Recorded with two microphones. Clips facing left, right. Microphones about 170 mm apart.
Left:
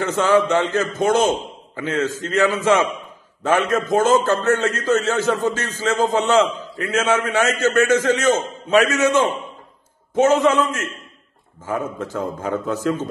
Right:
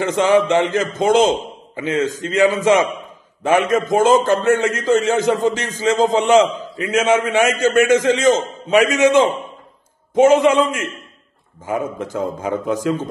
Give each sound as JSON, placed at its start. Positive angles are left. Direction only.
{"t": 0.2, "sound": "a man's voice", "side_deg": -15}